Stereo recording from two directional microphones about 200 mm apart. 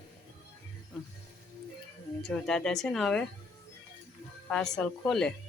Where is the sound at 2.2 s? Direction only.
5° left (ahead or behind).